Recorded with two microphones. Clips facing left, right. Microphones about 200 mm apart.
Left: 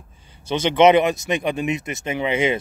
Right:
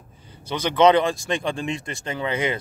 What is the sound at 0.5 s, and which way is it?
Speech, 25° left (ahead or behind).